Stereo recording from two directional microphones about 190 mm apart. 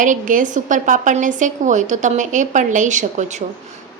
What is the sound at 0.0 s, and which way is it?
A woman's voice, 45° right (ahead or behind).